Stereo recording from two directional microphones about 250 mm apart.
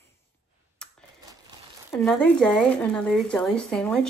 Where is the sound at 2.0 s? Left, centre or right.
Centre.